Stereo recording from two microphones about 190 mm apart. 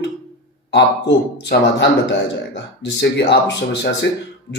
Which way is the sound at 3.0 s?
65° left (ahead or behind).